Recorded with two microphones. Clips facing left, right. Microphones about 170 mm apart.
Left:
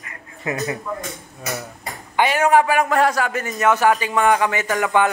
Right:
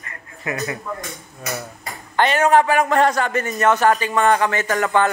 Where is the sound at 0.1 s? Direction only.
20° left (ahead or behind).